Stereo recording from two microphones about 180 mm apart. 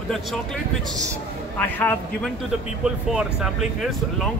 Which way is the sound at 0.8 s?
20° right (ahead or behind).